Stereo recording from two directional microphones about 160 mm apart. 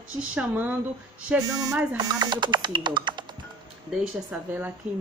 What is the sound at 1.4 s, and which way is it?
Speech, 20° right (ahead or behind).